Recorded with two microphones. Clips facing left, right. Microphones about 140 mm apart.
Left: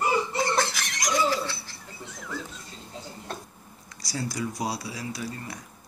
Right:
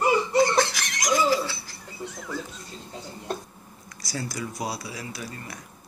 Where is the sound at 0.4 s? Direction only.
Centre (ahead or behind).